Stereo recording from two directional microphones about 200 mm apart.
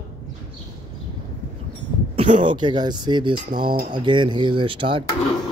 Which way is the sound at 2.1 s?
25° right (ahead or behind).